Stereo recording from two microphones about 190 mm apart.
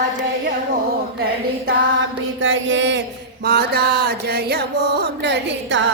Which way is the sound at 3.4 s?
60° right (ahead or behind).